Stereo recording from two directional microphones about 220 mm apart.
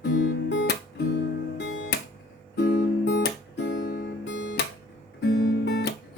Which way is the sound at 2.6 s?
50° left (ahead or behind).